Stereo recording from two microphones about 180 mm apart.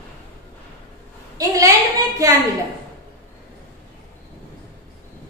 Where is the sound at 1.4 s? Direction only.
20° right (ahead or behind).